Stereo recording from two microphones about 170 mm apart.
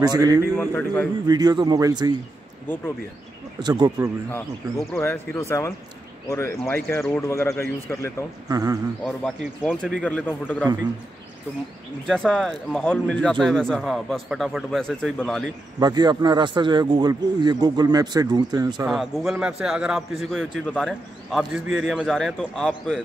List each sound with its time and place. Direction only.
0.0 s speech: 25° right (ahead or behind)
0.6 s speech: 10° left (ahead or behind)
1.2 s speech: 25° right (ahead or behind)
3.5 s speech: 25° right (ahead or behind)
4.9 s speech: 15° left (ahead or behind)
8.5 s speech: 20° right (ahead or behind)
9.0 s speech: centre (ahead or behind)
12.1 s a man's voice: 5° left (ahead or behind)
15.8 s speech: 25° right (ahead or behind)
18.9 s a man's voice: centre (ahead or behind)